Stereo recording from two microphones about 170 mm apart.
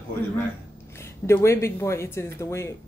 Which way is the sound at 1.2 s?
15° left (ahead or behind).